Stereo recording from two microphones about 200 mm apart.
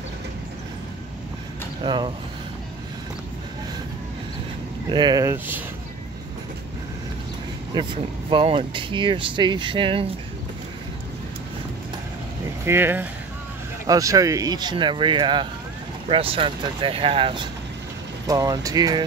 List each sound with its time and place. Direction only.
1.8 s speech: 25° right (ahead or behind)
4.8 s speech: 20° right (ahead or behind)
7.7 s speech: 25° right (ahead or behind)
12.6 s speech: 10° right (ahead or behind)